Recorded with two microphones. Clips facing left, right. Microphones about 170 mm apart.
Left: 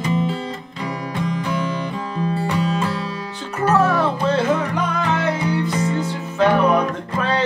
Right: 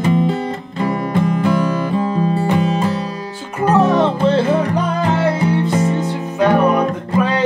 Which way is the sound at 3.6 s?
15° right (ahead or behind).